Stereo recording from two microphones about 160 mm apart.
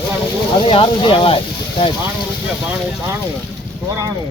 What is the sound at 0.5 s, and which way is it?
Speech, 35° left (ahead or behind).